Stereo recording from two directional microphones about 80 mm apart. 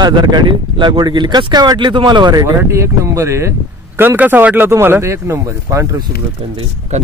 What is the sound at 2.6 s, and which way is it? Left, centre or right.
Speech, right.